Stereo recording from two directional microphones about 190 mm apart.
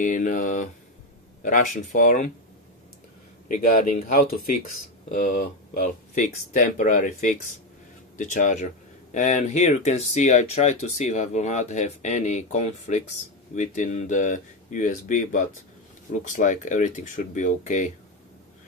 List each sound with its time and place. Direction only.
0.0 s speech: 40° left (ahead or behind)
3.4 s speech: 45° left (ahead or behind)